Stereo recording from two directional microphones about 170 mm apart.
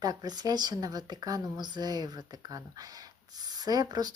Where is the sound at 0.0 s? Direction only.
25° right (ahead or behind).